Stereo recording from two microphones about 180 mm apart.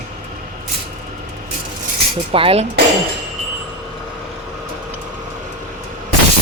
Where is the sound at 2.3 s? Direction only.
30° right (ahead or behind).